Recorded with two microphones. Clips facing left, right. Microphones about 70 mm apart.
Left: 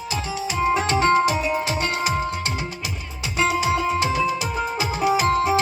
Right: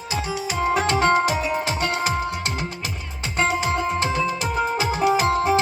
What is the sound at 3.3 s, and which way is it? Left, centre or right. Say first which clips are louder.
Music: left 1 dB; right.